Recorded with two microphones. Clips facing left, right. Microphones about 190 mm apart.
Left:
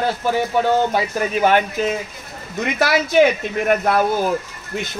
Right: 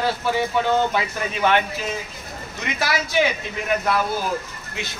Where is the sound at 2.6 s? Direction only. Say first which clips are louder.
Left 7 dB; 55° left (ahead or behind).